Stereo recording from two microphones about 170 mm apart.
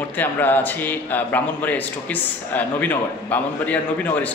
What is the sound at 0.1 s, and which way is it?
A man's voice, 10° left (ahead or behind).